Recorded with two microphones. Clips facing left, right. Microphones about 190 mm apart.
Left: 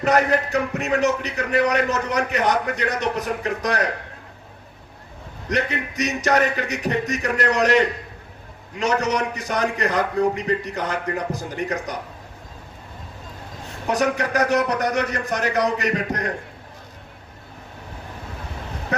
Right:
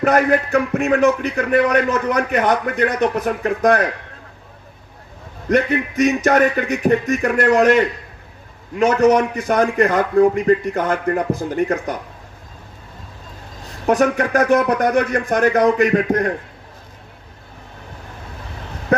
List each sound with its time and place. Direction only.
0.0 s speech: 50° right (ahead or behind)
5.5 s speech: 50° right (ahead or behind)
13.8 s speech: 50° right (ahead or behind)